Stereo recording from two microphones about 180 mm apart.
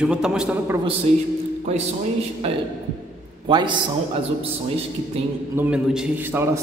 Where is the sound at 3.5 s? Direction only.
25° right (ahead or behind).